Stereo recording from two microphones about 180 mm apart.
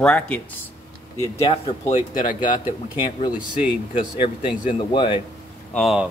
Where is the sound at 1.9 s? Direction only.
45° left (ahead or behind).